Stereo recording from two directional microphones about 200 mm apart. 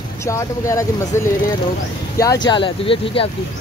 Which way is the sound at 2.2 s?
20° left (ahead or behind).